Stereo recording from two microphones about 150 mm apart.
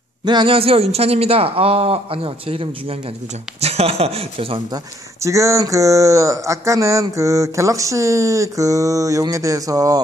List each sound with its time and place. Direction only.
0.2 s a man's voice: 30° right (ahead or behind)
5.2 s speech: 20° right (ahead or behind)